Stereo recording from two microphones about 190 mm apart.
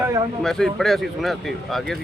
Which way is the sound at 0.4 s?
Centre (ahead or behind).